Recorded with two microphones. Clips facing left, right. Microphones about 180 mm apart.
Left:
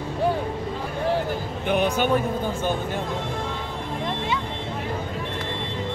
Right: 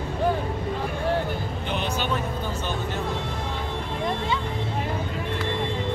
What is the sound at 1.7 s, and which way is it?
Music, 55° left (ahead or behind).